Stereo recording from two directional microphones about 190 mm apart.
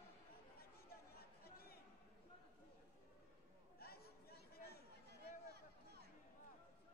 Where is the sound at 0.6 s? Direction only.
55° left (ahead or behind).